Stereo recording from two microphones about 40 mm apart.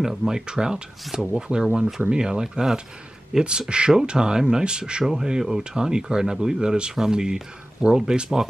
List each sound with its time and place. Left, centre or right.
0.0 s speech: centre
1.1 s speech: centre
1.5 s speech: right
1.9 s speech: centre